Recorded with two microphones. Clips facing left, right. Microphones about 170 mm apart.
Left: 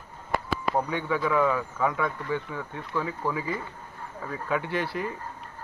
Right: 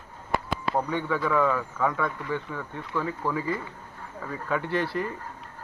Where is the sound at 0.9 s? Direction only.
15° left (ahead or behind).